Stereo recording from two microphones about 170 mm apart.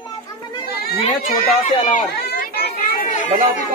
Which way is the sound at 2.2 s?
70° left (ahead or behind).